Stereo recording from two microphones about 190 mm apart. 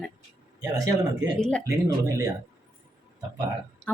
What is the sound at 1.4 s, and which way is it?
Speech, 5° left (ahead or behind).